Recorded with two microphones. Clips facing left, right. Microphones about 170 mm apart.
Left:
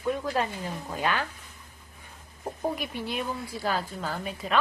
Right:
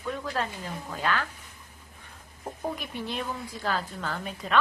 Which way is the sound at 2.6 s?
10° left (ahead or behind).